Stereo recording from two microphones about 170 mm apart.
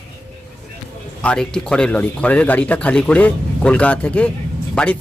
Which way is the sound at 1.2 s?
5° left (ahead or behind).